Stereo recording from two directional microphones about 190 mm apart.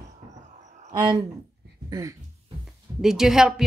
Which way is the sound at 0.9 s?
20° right (ahead or behind).